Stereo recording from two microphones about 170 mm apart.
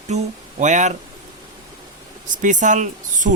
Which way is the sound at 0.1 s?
40° right (ahead or behind).